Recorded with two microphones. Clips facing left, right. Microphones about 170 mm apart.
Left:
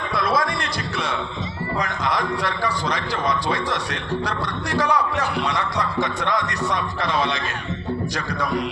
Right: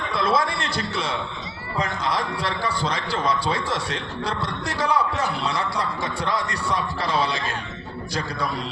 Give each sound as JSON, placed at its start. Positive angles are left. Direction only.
{"t": 0.2, "sound": "a sound", "side_deg": -25}
{"t": 1.8, "sound": "a man's voice", "side_deg": -30}
{"t": 4.8, "sound": "a man's voice", "side_deg": -30}
{"t": 7.0, "sound": "a man's voice", "side_deg": -35}